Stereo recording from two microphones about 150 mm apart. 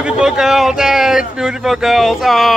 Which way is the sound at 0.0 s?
5° right (ahead or behind).